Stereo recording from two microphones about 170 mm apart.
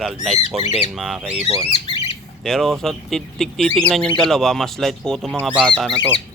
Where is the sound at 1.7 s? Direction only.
35° left (ahead or behind).